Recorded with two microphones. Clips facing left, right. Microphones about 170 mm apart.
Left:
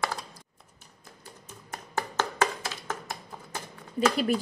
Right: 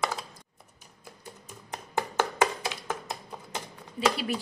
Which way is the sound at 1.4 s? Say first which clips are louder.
Even; 15° right (ahead or behind).